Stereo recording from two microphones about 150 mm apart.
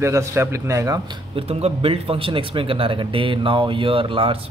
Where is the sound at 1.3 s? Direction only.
40° right (ahead or behind).